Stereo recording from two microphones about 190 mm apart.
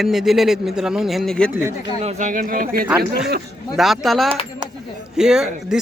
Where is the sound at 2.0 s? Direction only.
40° right (ahead or behind).